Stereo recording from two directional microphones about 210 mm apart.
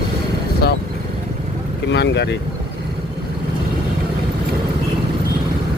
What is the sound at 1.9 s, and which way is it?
Speech, 55° left (ahead or behind).